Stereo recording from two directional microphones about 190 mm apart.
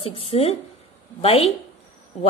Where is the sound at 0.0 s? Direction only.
30° left (ahead or behind).